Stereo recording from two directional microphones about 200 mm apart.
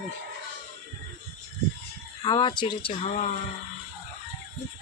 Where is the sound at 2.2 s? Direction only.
20° left (ahead or behind).